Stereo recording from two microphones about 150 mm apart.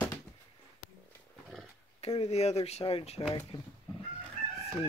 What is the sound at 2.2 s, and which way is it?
Speech, 45° left (ahead or behind).